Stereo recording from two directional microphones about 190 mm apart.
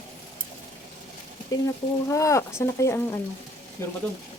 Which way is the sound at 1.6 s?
15° left (ahead or behind).